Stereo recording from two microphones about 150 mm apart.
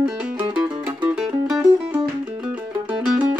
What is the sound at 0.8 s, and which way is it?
Music, 5° right (ahead or behind).